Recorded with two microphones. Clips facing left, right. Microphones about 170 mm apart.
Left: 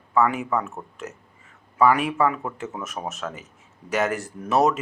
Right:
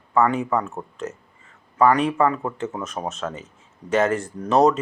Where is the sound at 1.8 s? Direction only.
5° left (ahead or behind).